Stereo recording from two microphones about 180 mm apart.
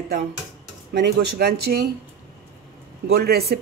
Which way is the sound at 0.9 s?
60° right (ahead or behind).